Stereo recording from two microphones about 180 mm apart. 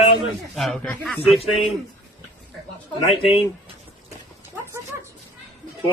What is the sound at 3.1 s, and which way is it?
Speech, 30° left (ahead or behind).